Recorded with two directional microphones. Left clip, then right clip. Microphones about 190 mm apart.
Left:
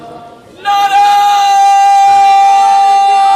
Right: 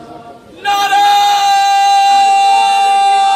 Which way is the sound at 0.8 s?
10° left (ahead or behind).